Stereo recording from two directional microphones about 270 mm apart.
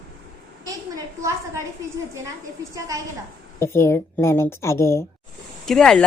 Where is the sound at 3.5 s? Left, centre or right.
Centre.